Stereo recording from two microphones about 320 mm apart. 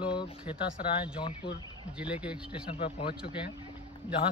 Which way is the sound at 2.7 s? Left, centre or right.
Centre.